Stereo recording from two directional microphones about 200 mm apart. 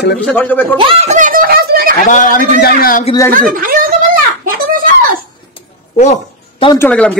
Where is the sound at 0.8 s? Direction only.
30° right (ahead or behind); by 1.9 s 50° right (ahead or behind).